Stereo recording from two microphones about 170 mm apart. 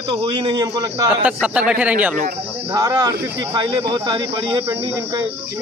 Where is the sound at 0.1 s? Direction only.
30° right (ahead or behind).